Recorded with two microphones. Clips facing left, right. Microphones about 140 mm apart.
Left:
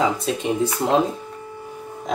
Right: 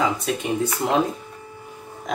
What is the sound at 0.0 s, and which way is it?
Speech, 25° left (ahead or behind).